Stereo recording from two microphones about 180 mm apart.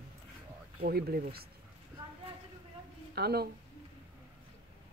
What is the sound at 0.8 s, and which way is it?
Speech, 60° right (ahead or behind).